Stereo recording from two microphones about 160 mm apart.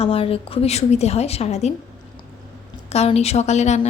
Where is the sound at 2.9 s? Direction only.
40° left (ahead or behind).